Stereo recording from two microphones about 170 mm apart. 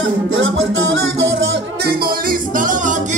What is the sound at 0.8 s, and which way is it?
Music, 90° right.